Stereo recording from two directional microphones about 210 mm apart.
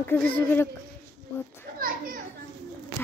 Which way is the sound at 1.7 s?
45° right (ahead or behind).